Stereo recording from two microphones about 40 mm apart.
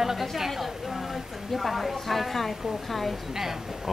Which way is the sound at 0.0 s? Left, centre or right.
Centre.